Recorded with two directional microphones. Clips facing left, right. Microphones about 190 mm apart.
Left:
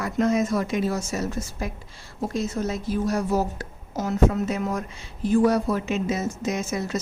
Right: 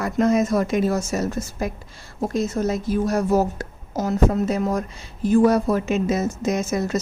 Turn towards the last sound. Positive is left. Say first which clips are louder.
# right 4 dB
turn(degrees=-45)  # may be behind; listen again after turning